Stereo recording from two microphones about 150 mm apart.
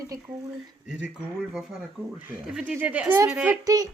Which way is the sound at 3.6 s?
25° right (ahead or behind).